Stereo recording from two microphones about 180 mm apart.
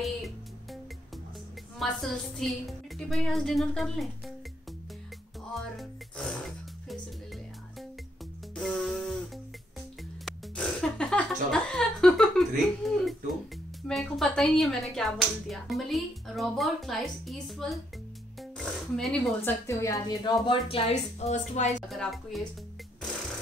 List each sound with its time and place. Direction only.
0.0 s music: centre (ahead or behind)
1.8 s speech: centre (ahead or behind)
5.5 s music: centre (ahead or behind)
8.5 s music: centre (ahead or behind)
10.2 s speech: 5° left (ahead or behind)
19.6 s a woman's voice: 15° left (ahead or behind)
20.4 s speech: 30° left (ahead or behind)
21.8 s speech: centre (ahead or behind)